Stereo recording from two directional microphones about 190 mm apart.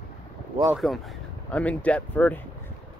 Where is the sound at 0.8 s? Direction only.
Centre (ahead or behind).